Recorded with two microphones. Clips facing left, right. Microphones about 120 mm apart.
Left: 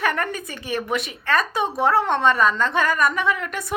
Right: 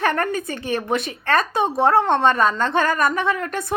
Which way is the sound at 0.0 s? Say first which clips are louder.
Right 3 dB; 30° right (ahead or behind).